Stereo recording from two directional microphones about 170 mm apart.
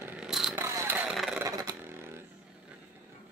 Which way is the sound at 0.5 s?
15° right (ahead or behind).